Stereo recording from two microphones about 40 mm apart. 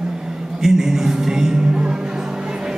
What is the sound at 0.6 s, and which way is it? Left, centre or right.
Music, centre.